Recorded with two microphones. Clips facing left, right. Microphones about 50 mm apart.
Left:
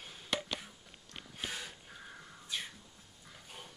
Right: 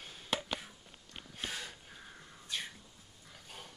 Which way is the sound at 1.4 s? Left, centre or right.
Centre.